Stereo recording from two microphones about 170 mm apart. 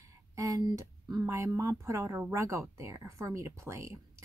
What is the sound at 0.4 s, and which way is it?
Speech, 20° right (ahead or behind).